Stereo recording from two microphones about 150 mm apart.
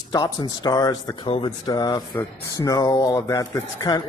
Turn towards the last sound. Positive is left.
turn(degrees=25)  # may be behind; listen again after turning